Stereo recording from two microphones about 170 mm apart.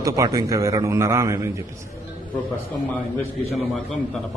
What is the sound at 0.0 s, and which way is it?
Speech, 20° right (ahead or behind).